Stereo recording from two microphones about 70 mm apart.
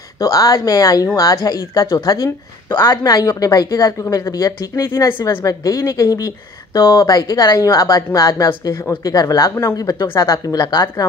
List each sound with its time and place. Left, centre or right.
0.2 s speech: left
2.9 s speech: left
7.1 s speech: left
9.8 s speech: left